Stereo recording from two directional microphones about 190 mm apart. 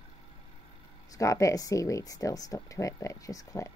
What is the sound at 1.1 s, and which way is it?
Speech, 15° left (ahead or behind).